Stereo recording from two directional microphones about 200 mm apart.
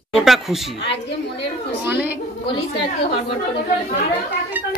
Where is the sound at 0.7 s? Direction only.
60° left (ahead or behind).